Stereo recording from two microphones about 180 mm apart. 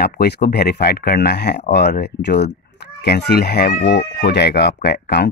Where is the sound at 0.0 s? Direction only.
60° left (ahead or behind).